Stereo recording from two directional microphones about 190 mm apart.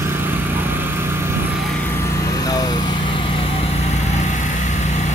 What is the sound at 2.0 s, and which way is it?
Vehicle, 15° left (ahead or behind).